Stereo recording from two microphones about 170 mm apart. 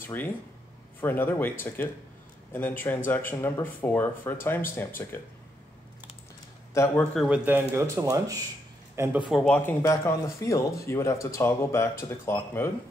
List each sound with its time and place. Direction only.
0.0 s speech: 10° left (ahead or behind)
6.7 s speech: 15° left (ahead or behind)
7.2 s speech: 10° right (ahead or behind)
9.3 s speech: 5° left (ahead or behind)